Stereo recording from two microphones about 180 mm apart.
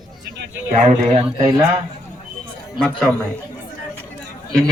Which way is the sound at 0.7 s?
40° right (ahead or behind).